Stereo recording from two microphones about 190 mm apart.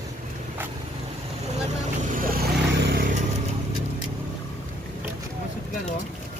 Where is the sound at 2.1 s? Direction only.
50° right (ahead or behind).